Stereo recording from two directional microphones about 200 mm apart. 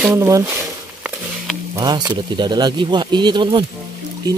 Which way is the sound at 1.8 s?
20° right (ahead or behind).